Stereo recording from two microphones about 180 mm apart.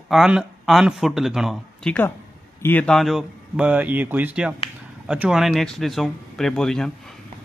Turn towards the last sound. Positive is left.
turn(degrees=5)  # may be behind; listen again after turning